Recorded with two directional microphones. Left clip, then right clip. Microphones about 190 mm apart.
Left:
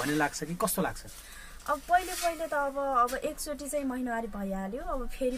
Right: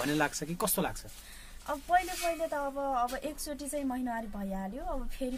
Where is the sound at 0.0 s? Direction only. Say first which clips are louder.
Left 1 dB; 40° right (ahead or behind).